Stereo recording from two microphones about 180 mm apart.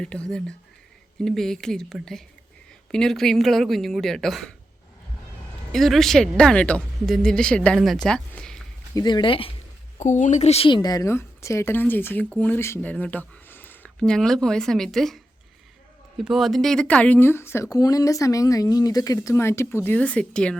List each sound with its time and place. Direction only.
0.0 s speech: 5° left (ahead or behind)
5.7 s speech: centre (ahead or behind)
9.0 s speech: 25° left (ahead or behind)
10.0 s a woman's voice: 40° left (ahead or behind)
10.8 s speech: 20° left (ahead or behind); by 20.6 s 5° left (ahead or behind)